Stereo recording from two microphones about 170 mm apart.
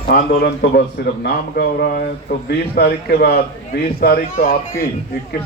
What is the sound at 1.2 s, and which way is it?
A man's voice, 70° left (ahead or behind).